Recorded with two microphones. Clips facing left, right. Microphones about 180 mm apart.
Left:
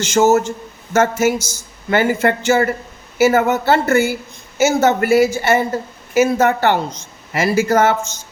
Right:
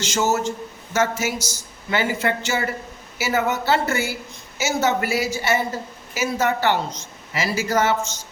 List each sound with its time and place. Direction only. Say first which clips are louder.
0.0 s a woman's voice: left 8 dB; 50° left (ahead or behind)